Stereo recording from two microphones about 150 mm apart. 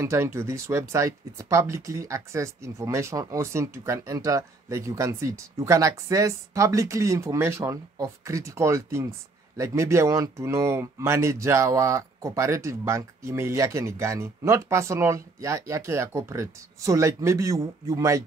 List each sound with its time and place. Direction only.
0.0 s speech: 15° right (ahead or behind)